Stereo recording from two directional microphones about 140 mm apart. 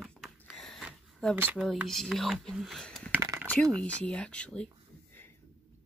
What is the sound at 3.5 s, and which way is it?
Speech, 5° left (ahead or behind).